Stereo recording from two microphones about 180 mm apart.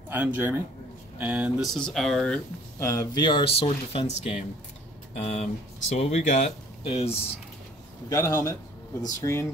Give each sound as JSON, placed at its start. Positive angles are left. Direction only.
{"t": 0.1, "sound": "a man's voice", "side_deg": -10}
{"t": 8.1, "sound": "a man's voice", "side_deg": 20}